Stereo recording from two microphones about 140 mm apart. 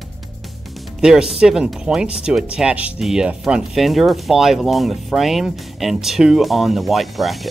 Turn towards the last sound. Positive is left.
turn(degrees=0)  # may be behind; listen again after turning